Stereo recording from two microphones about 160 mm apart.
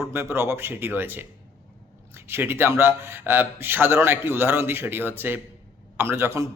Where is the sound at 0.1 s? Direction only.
15° right (ahead or behind).